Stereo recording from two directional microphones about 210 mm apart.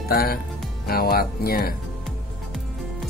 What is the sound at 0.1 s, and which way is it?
Speech, 45° left (ahead or behind).